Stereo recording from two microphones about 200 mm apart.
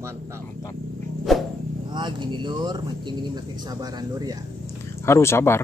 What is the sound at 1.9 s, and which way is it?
Speech, 25° right (ahead or behind).